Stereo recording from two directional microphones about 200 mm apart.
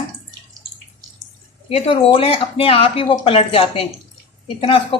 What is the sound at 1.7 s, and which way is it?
Speech, 25° left (ahead or behind).